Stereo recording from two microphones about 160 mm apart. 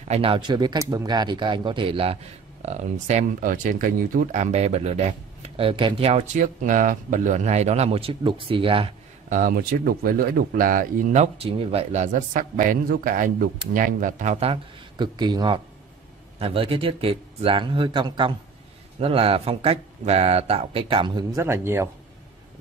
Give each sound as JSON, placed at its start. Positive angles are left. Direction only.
{"t": 0.1, "sound": "speech", "side_deg": -35}
{"t": 2.6, "sound": "speech", "side_deg": -45}
{"t": 9.3, "sound": "speech", "side_deg": -60}
{"t": 11.3, "sound": "speech", "side_deg": -35}
{"t": 21.4, "sound": "speech", "side_deg": -15}